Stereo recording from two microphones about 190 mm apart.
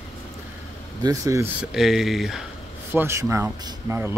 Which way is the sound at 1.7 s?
Centre (ahead or behind).